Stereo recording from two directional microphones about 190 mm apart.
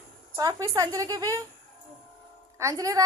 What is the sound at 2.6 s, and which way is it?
Speech, 15° right (ahead or behind).